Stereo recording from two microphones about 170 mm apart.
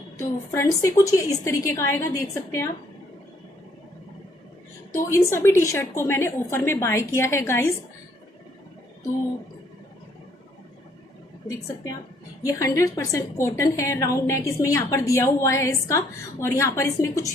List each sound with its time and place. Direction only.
0.2 s a woman's voice: 15° left (ahead or behind)
4.9 s a woman's voice: 15° left (ahead or behind)
12.4 s a woman's voice: 20° left (ahead or behind)